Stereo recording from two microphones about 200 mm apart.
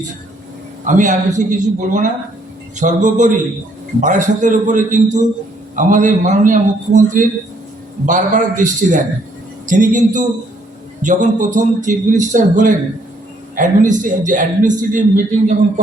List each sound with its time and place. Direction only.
0.9 s a man's voice: 40° right (ahead or behind)